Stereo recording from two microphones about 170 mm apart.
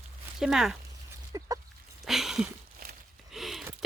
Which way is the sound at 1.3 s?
20° right (ahead or behind).